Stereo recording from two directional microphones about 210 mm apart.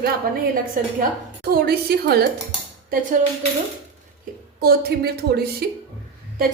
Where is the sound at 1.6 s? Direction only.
50° right (ahead or behind).